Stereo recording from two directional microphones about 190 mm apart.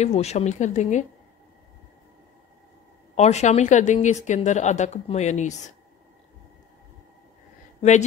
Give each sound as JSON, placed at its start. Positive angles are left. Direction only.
{"t": 0.0, "sound": "speech", "side_deg": 35}
{"t": 3.2, "sound": "speech", "side_deg": 35}